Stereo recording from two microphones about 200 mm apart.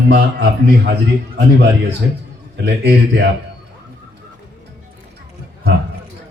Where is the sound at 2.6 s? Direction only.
55° right (ahead or behind).